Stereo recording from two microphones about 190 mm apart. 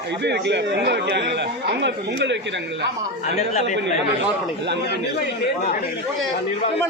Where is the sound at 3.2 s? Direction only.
40° left (ahead or behind).